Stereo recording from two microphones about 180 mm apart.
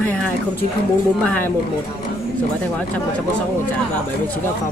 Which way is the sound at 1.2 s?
10° left (ahead or behind).